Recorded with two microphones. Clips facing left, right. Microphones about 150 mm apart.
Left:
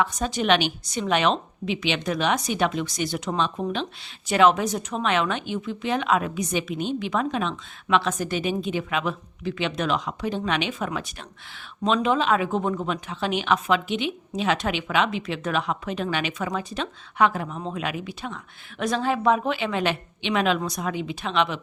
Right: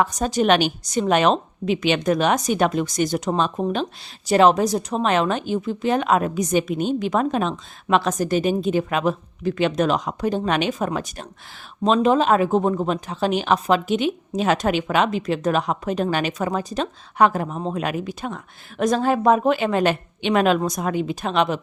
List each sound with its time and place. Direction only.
0.0 s a woman's voice: 40° right (ahead or behind)